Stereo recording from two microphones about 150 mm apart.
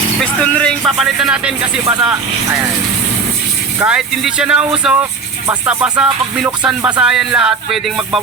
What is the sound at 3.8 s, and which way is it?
Speech, 5° right (ahead or behind).